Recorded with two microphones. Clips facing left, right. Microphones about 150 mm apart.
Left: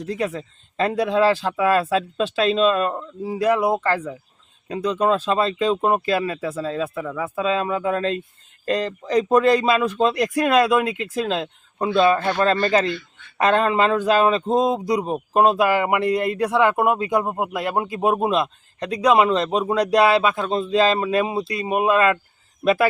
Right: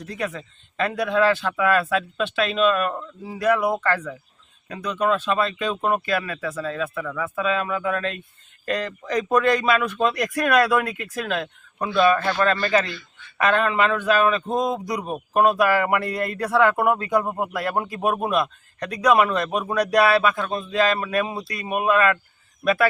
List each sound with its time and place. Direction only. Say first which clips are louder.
0.0 s a man's voice: left 4 dB; 30° left (ahead or behind)